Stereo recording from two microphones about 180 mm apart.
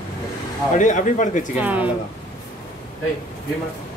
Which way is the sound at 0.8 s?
45° left (ahead or behind).